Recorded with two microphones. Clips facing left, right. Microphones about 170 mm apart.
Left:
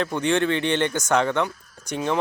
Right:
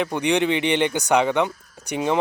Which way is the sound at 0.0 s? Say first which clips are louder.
Right 1 dB; 15° right (ahead or behind).